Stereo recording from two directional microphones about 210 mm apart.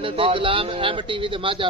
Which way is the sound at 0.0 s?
25° right (ahead or behind).